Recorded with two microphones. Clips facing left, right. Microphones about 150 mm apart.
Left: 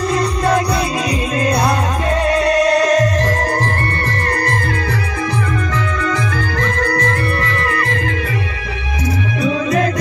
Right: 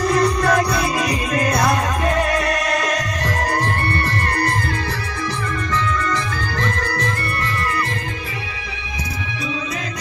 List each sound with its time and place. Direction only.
0.1 s music: 25° left (ahead or behind)
6.8 s music: 60° left (ahead or behind)